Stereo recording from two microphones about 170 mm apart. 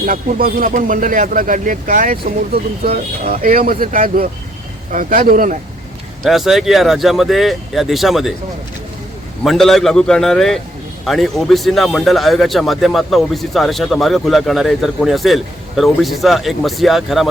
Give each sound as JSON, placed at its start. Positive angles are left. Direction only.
{"t": 0.0, "sound": "speech", "side_deg": -55}
{"t": 3.2, "sound": "speech", "side_deg": -55}
{"t": 6.2, "sound": "speech", "side_deg": 0}
{"t": 9.4, "sound": "speech", "side_deg": 0}